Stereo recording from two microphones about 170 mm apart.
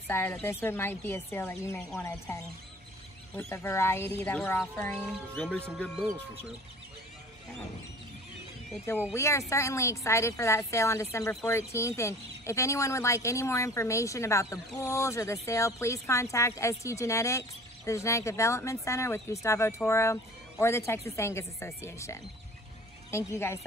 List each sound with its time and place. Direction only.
0.1 s speech: 15° left (ahead or behind)
1.8 s speech: 5° left (ahead or behind)
2.0 s speech: 15° left (ahead or behind)
9.1 s speech: 15° left (ahead or behind)